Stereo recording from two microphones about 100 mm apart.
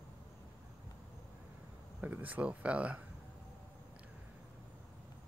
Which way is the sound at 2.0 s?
15° right (ahead or behind).